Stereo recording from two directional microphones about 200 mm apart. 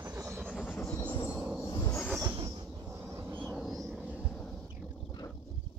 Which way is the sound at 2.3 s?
20° right (ahead or behind).